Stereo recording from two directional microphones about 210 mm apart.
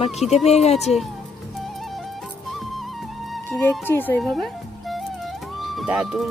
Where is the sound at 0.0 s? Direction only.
30° left (ahead or behind).